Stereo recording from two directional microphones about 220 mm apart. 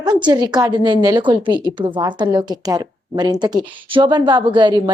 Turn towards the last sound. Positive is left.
turn(degrees=-20)  # may be behind; listen again after turning